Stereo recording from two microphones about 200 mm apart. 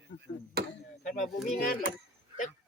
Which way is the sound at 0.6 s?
55° right (ahead or behind).